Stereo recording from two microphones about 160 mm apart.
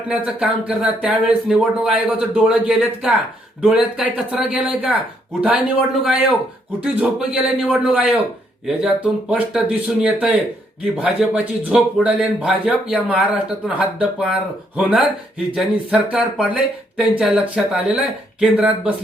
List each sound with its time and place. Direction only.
0.1 s speech: 10° right (ahead or behind)
9.3 s speech: 10° right (ahead or behind)